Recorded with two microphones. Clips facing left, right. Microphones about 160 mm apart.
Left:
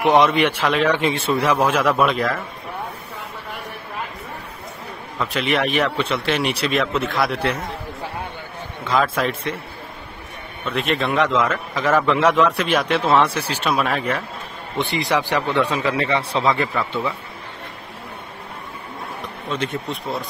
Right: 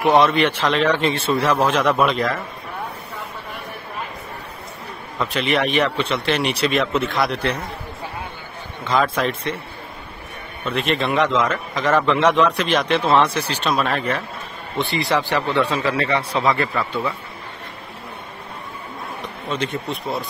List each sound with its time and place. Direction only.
0.0 s a man's voice: 15° left (ahead or behind)
5.2 s a man's voice: centre (ahead or behind)
8.8 s a man's voice: centre (ahead or behind)
10.6 s a man's voice: centre (ahead or behind); by 16.3 s 25° left (ahead or behind)